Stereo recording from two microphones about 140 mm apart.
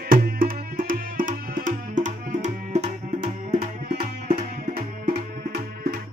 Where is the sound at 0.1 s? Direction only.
90° right; by 2.9 s 55° right (ahead or behind).